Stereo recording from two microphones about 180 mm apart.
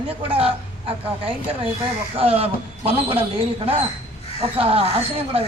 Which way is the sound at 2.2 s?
35° right (ahead or behind).